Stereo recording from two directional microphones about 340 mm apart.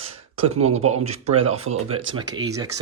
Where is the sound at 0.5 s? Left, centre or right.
Centre.